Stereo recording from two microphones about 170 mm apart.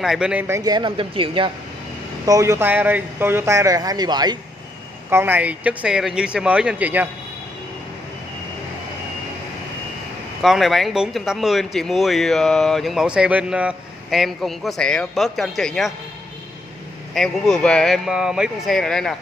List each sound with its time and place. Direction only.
0.0 s a man's voice: 5° right (ahead or behind); by 1.5 s 30° right (ahead or behind)
2.2 s speech: 20° right (ahead or behind)
5.1 s speech: 10° right (ahead or behind)
10.4 s speech: centre (ahead or behind)
17.1 s speech: 5° left (ahead or behind)